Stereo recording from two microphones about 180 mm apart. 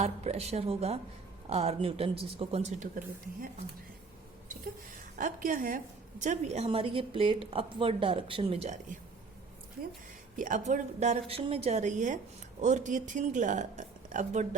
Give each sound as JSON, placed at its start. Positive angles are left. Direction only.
{"t": 0.0, "sound": "a woman's voice", "side_deg": -35}
{"t": 5.1, "sound": "a woman's voice", "side_deg": -50}
{"t": 10.3, "sound": "a woman's voice", "side_deg": -45}